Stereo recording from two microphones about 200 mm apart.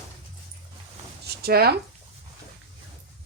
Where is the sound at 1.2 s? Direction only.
55° right (ahead or behind).